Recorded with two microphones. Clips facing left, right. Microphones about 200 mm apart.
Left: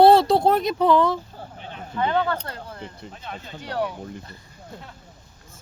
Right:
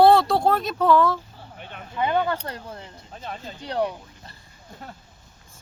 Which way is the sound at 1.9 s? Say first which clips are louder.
Even; 15° right (ahead or behind).